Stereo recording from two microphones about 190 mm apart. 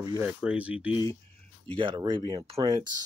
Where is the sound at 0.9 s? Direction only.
20° left (ahead or behind).